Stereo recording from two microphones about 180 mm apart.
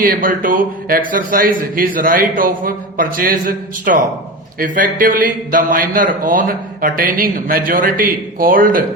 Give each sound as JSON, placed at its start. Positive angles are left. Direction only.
{"t": 0.0, "sound": "speech", "side_deg": -50}